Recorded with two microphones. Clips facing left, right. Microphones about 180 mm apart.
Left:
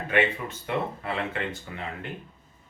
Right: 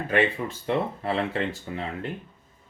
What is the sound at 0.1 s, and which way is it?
Speech, 30° right (ahead or behind).